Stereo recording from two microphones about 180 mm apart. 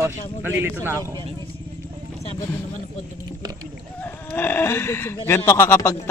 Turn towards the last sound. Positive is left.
turn(degrees=15)  # may be behind; listen again after turning